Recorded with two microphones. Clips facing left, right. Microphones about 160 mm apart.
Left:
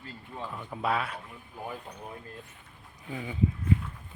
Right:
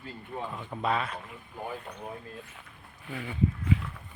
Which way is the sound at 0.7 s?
5° left (ahead or behind).